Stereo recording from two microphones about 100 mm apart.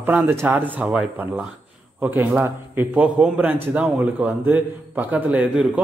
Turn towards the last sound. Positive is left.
turn(degrees=-15)  # may be behind; listen again after turning